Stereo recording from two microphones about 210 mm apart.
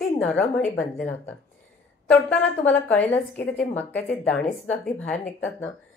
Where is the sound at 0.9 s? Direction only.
10° left (ahead or behind).